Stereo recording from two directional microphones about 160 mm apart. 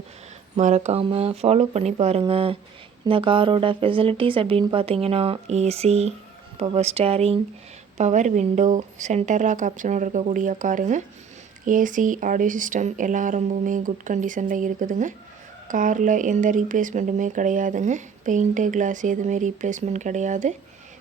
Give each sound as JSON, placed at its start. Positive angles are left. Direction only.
{"t": 0.5, "sound": "speech", "side_deg": -45}